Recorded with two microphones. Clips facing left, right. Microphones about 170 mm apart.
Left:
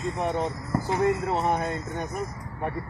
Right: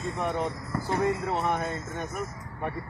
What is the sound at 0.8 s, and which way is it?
Speech, 20° left (ahead or behind).